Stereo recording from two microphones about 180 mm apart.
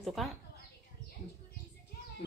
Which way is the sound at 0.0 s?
Centre (ahead or behind).